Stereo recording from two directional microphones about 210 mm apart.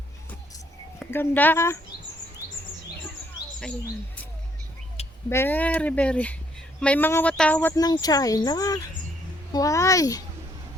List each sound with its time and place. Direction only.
1.1 s speech: 10° left (ahead or behind)
5.0 s a sound: 30° left (ahead or behind)
5.3 s speech: 10° left (ahead or behind)
7.8 s speech: 15° left (ahead or behind)